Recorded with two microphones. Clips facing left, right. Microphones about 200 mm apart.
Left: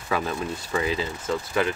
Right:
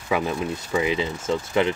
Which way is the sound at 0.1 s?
10° right (ahead or behind).